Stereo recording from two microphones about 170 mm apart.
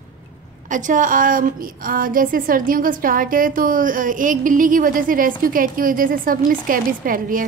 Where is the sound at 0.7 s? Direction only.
50° right (ahead or behind).